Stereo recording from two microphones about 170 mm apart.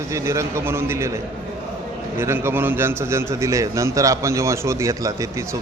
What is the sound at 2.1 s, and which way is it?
A man's voice, 15° right (ahead or behind).